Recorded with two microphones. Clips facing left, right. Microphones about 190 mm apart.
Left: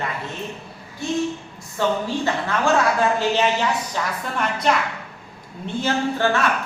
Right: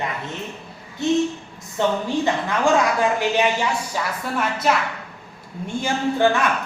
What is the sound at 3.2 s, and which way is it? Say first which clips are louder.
A woman's voice: even; 10° right (ahead or behind).